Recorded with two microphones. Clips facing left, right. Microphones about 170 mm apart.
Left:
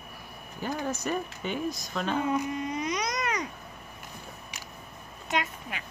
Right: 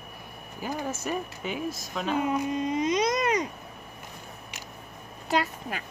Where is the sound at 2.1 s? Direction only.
15° right (ahead or behind).